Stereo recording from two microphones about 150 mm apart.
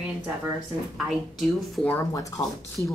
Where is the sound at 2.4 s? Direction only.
25° left (ahead or behind).